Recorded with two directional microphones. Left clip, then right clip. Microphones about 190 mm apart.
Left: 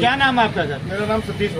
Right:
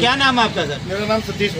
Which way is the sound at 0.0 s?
20° left (ahead or behind).